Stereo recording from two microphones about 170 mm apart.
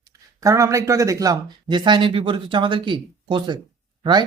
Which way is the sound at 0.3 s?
15° right (ahead or behind).